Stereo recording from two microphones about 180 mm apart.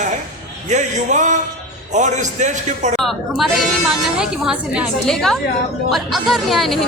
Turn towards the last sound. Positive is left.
turn(degrees=0)  # may be behind; listen again after turning